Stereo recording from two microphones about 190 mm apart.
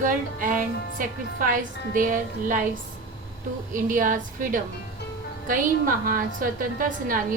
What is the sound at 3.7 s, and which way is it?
A woman's voice, 45° right (ahead or behind).